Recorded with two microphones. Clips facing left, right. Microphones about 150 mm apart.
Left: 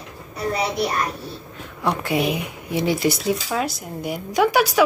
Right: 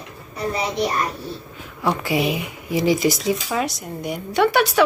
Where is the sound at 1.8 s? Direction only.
Centre (ahead or behind).